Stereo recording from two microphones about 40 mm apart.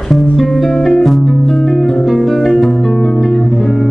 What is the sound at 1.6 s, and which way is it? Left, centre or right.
Music, centre.